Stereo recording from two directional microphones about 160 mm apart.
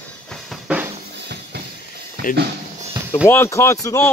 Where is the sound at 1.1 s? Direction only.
90° right.